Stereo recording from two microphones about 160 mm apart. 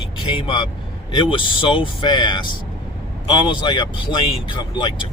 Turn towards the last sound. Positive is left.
turn(degrees=30)  # may be behind; listen again after turning